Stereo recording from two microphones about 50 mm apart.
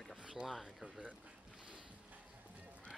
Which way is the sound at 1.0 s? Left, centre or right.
Right.